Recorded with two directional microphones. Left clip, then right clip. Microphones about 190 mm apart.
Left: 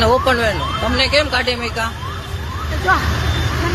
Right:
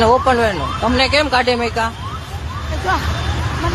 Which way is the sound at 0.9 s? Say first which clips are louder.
Right 1 dB; 30° right (ahead or behind).